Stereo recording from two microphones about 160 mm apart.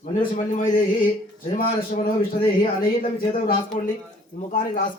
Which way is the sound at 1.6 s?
65° left (ahead or behind).